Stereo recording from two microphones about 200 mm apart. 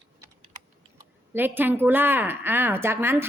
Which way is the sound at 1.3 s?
10° right (ahead or behind).